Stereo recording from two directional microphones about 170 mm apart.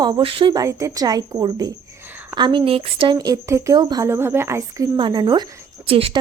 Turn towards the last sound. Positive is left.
turn(degrees=-35)  # may be behind; listen again after turning